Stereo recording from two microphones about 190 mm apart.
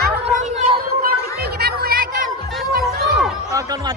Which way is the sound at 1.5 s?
55° right (ahead or behind).